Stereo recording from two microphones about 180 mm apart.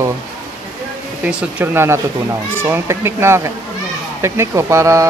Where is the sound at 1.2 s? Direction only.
10° right (ahead or behind).